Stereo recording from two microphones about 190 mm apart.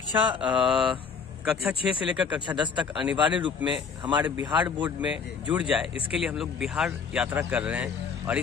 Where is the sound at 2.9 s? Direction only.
5° right (ahead or behind).